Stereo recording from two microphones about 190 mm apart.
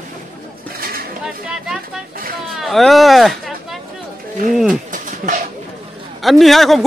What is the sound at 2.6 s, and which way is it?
A man's voice, centre (ahead or behind).